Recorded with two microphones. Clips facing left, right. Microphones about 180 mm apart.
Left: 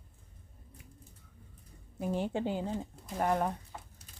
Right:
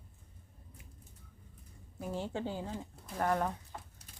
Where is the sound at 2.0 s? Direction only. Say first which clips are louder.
Left 5 dB; 20° left (ahead or behind).